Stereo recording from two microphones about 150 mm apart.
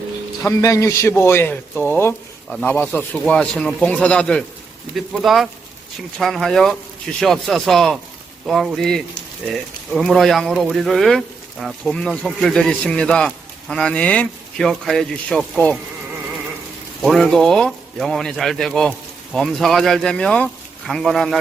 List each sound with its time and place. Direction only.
0.4 s speech: 20° left (ahead or behind); by 15.6 s centre (ahead or behind)
17.0 s speech: centre (ahead or behind)